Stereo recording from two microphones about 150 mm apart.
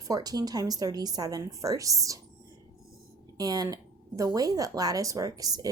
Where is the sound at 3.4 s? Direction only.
25° right (ahead or behind).